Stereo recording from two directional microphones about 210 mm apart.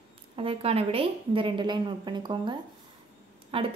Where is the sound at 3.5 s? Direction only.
25° right (ahead or behind).